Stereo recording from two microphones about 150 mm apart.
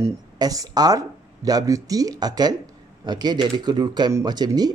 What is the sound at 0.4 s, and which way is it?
Speech, 25° right (ahead or behind).